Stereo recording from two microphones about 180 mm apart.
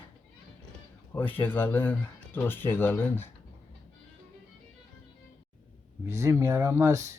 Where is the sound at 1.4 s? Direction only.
10° left (ahead or behind).